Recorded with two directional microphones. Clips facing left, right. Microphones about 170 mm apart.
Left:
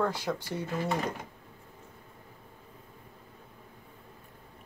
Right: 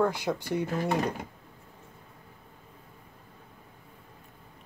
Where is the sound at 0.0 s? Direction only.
15° right (ahead or behind).